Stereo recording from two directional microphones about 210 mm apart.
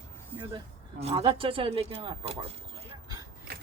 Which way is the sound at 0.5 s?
30° right (ahead or behind).